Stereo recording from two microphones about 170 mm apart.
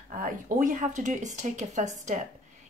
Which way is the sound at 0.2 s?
50° right (ahead or behind).